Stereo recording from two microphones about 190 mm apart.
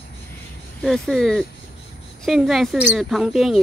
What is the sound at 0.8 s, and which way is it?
Speech, centre (ahead or behind).